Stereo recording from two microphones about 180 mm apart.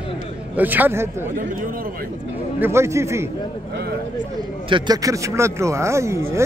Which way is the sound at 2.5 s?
15° right (ahead or behind).